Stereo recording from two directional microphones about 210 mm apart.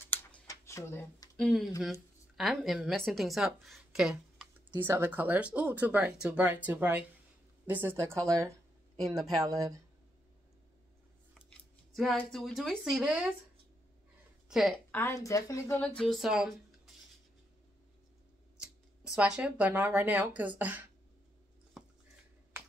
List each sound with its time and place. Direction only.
0.0 s a sound: 10° left (ahead or behind)
1.8 s a woman's voice: centre (ahead or behind); by 9.8 s 15° right (ahead or behind)
11.3 s speech: centre (ahead or behind)
14.5 s a woman's voice: centre (ahead or behind)
15.0 s a woman's voice: 15° left (ahead or behind); by 16.9 s centre (ahead or behind)
18.6 s speech: 5° right (ahead or behind)